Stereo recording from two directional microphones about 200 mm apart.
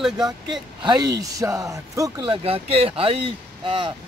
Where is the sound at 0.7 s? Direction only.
20° right (ahead or behind).